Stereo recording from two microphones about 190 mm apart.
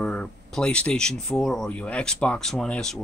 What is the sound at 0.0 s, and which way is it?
Speech, 5° left (ahead or behind).